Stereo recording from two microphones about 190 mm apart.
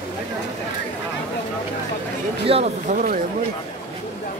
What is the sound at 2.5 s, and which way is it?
Speech, 30° right (ahead or behind).